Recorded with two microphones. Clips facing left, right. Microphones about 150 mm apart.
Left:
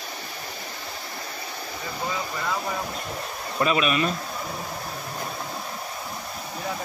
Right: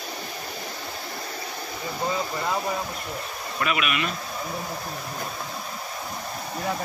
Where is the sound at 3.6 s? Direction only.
30° left (ahead or behind).